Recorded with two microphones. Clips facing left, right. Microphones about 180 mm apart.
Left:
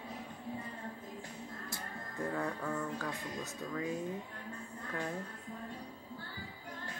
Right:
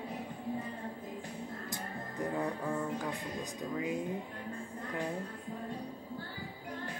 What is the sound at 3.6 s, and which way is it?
Speech, 15° right (ahead or behind).